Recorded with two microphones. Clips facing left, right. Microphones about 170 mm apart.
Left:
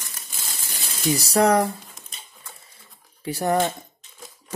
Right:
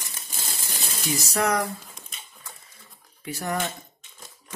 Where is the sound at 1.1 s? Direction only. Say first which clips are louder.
Left 6 dB; 35° left (ahead or behind).